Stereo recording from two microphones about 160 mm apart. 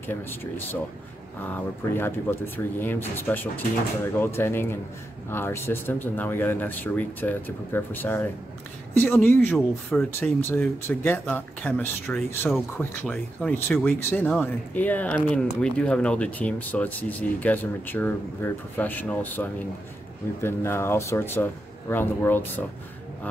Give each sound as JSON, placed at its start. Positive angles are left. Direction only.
{"t": 0.0, "sound": "speech", "side_deg": 15}